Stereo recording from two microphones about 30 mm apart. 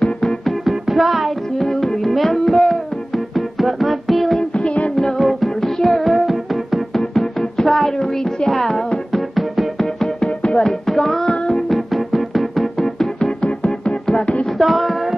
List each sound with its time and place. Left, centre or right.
0.7 s music: centre
1.6 s music: centre
3.3 s music: centre
4.9 s music: centre
5.2 s music: centre
6.9 s music: centre
9.1 s music: centre
9.8 s music: centre
11.2 s music: left
11.7 s music: centre
12.7 s music: centre
13.4 s music: left
14.6 s female singing: centre